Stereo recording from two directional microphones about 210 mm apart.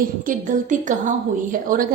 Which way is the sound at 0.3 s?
40° right (ahead or behind).